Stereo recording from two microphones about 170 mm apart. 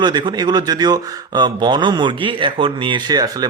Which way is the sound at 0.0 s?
25° right (ahead or behind).